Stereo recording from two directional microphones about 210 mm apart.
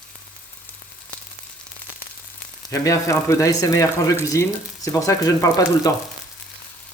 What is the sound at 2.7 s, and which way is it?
Speech, 15° left (ahead or behind).